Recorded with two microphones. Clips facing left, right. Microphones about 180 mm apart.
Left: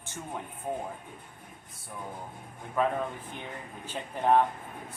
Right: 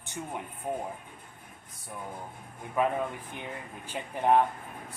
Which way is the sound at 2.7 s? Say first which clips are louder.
Even; 10° right (ahead or behind).